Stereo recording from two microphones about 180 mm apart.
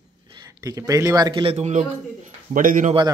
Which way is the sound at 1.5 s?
40° right (ahead or behind).